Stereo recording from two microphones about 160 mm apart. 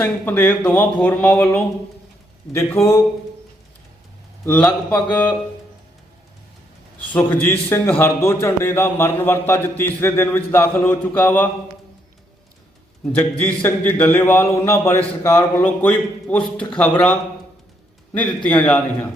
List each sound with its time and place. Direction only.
0.0 s a man's voice: 10° left (ahead or behind)
4.4 s a man's voice: 10° left (ahead or behind)
7.1 s a man's voice: 10° left (ahead or behind)
13.1 s a man's voice: 10° left (ahead or behind)
18.4 s a man's voice: 5° left (ahead or behind)